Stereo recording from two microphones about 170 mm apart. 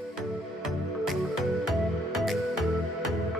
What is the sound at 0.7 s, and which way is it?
Music, centre (ahead or behind).